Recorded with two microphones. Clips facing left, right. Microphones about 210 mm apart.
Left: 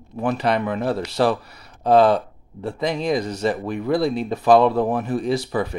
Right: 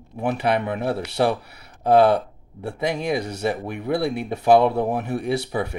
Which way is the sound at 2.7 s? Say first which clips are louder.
Left 2 dB; 10° right (ahead or behind).